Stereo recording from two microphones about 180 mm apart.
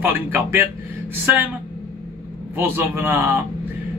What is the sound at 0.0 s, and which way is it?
Speech, 10° right (ahead or behind).